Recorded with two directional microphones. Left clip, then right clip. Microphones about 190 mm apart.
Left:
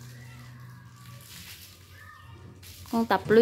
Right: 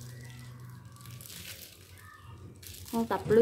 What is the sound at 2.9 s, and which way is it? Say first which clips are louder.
Speech: left 5 dB; 20° left (ahead or behind).